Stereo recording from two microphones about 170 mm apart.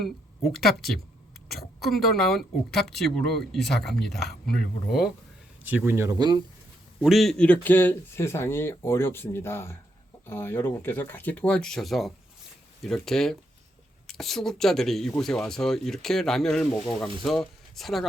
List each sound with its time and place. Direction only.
0.0 s speech: centre (ahead or behind)
5.6 s speech: 10° right (ahead or behind)
7.0 s speech: centre (ahead or behind)